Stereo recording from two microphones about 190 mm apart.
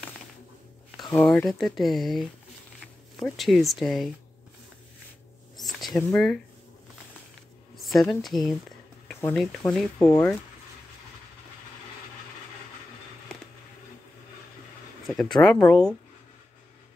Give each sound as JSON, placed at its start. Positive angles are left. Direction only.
{"t": 1.1, "sound": "speech", "side_deg": 5}
{"t": 3.3, "sound": "speech", "side_deg": 0}
{"t": 5.6, "sound": "a sound", "side_deg": 0}
{"t": 6.1, "sound": "speech", "side_deg": 5}
{"t": 7.7, "sound": "a sound", "side_deg": 0}
{"t": 8.2, "sound": "speech", "side_deg": 0}
{"t": 9.9, "sound": "speech", "side_deg": 20}
{"t": 15.0, "sound": "speech", "side_deg": 5}